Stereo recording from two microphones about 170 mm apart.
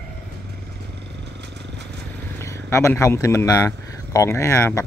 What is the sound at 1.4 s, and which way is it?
Vehicle, 90° right.